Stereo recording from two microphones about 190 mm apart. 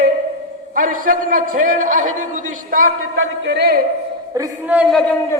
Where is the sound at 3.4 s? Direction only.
60° right (ahead or behind).